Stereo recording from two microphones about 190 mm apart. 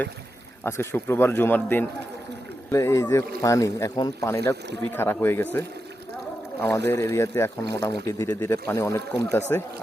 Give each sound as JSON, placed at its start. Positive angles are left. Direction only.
{"t": 0.6, "sound": "speech", "side_deg": 10}